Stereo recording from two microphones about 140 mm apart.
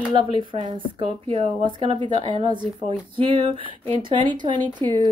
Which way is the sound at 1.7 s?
40° right (ahead or behind).